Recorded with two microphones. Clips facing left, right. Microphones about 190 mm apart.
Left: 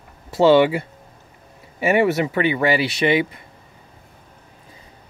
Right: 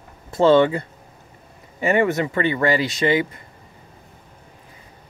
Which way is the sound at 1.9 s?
15° left (ahead or behind).